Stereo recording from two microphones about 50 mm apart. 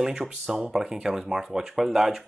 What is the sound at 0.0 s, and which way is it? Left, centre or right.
Speech, centre.